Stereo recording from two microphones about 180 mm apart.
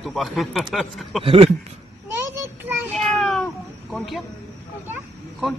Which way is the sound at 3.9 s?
Centre (ahead or behind).